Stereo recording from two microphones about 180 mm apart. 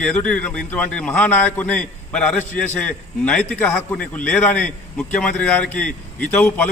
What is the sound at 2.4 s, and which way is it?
Speech, 45° left (ahead or behind).